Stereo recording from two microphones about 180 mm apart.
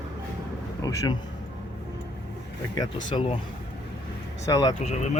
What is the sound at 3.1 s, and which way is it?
Speech, 30° left (ahead or behind).